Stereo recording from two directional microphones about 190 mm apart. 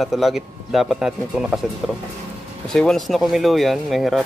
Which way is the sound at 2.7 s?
Centre (ahead or behind).